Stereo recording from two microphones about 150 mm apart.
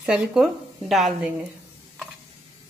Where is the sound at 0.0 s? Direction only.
5° right (ahead or behind).